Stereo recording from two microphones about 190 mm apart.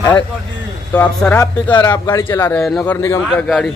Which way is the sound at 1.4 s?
20° left (ahead or behind).